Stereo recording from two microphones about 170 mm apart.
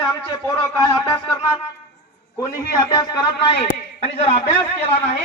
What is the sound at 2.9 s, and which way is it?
A man's voice, 25° left (ahead or behind).